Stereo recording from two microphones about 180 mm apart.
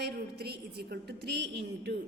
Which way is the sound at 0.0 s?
65° right (ahead or behind).